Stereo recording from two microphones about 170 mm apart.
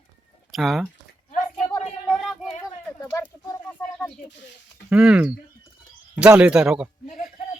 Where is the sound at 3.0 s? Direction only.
20° left (ahead or behind).